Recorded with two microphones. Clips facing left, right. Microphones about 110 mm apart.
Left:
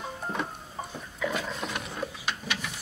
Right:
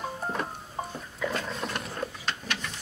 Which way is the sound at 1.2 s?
5° left (ahead or behind).